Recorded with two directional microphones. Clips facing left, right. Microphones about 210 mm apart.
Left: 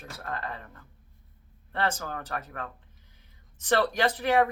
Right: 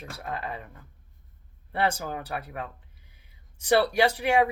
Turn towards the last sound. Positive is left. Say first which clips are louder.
# right 2 dB
turn(degrees=-10)  # may be behind; listen again after turning